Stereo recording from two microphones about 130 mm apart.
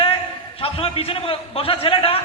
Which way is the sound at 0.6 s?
45° left (ahead or behind).